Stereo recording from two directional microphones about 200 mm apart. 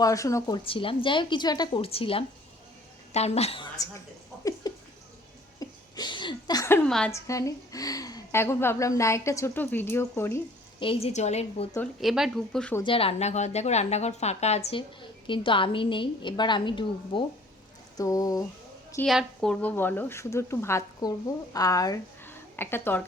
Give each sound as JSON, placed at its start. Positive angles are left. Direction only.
{"t": 0.0, "sound": "a woman's voice", "side_deg": 15}
{"t": 4.7, "sound": "a sound", "side_deg": 20}
{"t": 5.5, "sound": "a woman's voice", "side_deg": 20}
{"t": 7.1, "sound": "speech", "side_deg": 15}
{"t": 10.8, "sound": "a woman's voice", "side_deg": 30}
{"t": 11.9, "sound": "speech", "side_deg": 0}
{"t": 12.8, "sound": "a woman's voice", "side_deg": 25}
{"t": 19.0, "sound": "speech", "side_deg": 0}